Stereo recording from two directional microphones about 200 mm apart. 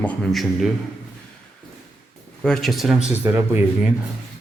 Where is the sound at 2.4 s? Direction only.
Centre (ahead or behind).